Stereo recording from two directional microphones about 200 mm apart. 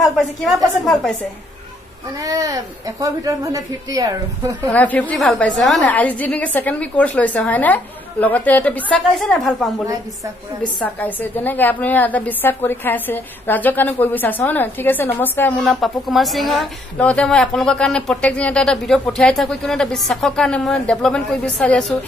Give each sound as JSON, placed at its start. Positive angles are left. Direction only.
{"t": 0.0, "sound": "a woman's voice", "side_deg": 0}
{"t": 2.2, "sound": "speech", "side_deg": -15}
{"t": 4.6, "sound": "a woman's voice", "side_deg": 5}
{"t": 10.8, "sound": "a woman's voice", "side_deg": 10}